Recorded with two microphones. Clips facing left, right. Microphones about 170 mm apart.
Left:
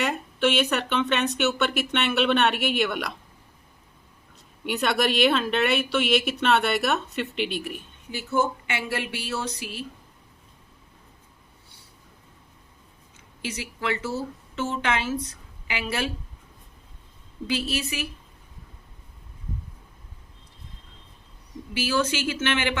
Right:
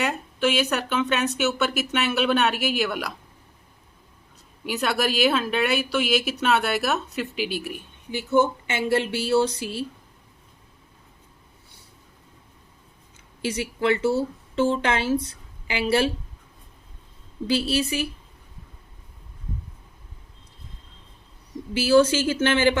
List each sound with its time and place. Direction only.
0.0 s speech: centre (ahead or behind)
4.6 s speech: centre (ahead or behind)
8.6 s a woman's voice: 30° right (ahead or behind)
13.4 s speech: 30° right (ahead or behind)
17.4 s speech: 35° right (ahead or behind)
21.7 s speech: 30° right (ahead or behind)